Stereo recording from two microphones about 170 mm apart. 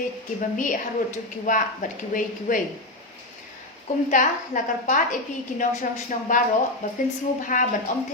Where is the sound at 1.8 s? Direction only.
50° left (ahead or behind).